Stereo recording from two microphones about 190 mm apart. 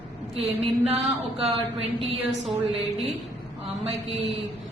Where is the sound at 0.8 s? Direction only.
30° right (ahead or behind).